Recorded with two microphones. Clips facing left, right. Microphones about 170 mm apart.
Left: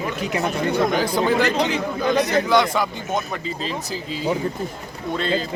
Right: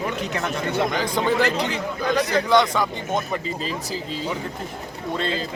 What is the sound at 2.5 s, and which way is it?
Speech, 5° left (ahead or behind).